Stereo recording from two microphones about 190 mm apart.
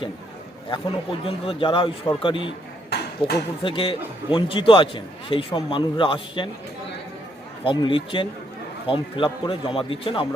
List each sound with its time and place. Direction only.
1.2 s a man's voice: 30° left (ahead or behind)
7.6 s a man's voice: 25° left (ahead or behind)